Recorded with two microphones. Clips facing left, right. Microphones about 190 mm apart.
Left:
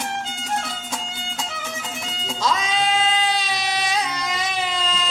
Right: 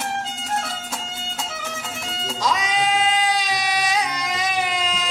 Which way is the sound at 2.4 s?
15° right (ahead or behind).